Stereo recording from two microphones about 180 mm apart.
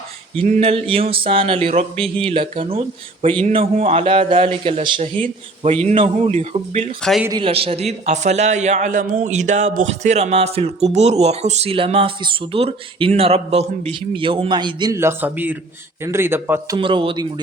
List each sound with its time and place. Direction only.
0.4 s a man's voice: 35° right (ahead or behind)
7.0 s a man's voice: centre (ahead or behind)
7.3 s a man's voice: 25° right (ahead or behind); by 16.7 s 10° right (ahead or behind)
16.7 s speech: 25° right (ahead or behind)